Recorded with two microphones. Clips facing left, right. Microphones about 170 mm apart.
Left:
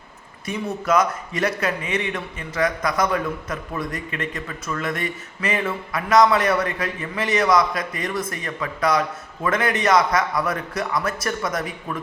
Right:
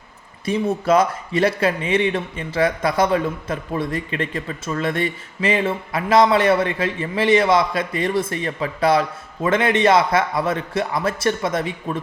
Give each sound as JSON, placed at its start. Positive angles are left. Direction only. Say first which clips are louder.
{"t": 0.4, "sound": "a man's voice", "louder": "right 5 dB", "side_deg": -30}